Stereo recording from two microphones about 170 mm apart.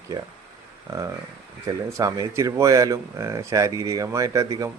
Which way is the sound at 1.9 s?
20° right (ahead or behind).